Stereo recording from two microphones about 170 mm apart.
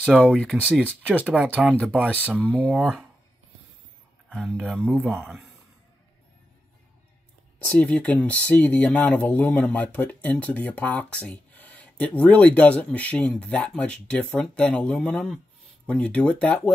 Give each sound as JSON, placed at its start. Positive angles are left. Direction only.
{"t": 0.0, "sound": "speech", "side_deg": 0}
{"t": 0.6, "sound": "speech", "side_deg": -5}
{"t": 0.8, "sound": "speech", "side_deg": 10}
{"t": 1.3, "sound": "speech", "side_deg": -5}
{"t": 2.0, "sound": "speech", "side_deg": 10}
{"t": 4.3, "sound": "speech", "side_deg": -5}
{"t": 7.8, "sound": "speech", "side_deg": 5}